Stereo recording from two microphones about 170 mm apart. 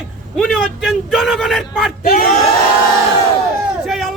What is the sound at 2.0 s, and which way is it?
Speech, 55° left (ahead or behind).